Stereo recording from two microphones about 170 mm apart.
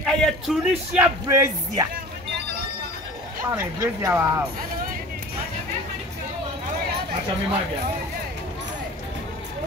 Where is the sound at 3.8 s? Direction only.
15° right (ahead or behind).